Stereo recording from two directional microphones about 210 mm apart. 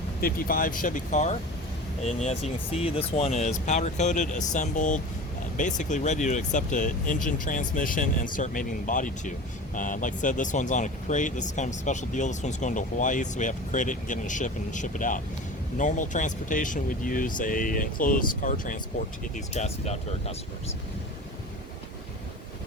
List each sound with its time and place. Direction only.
0.2 s speech: 45° left (ahead or behind)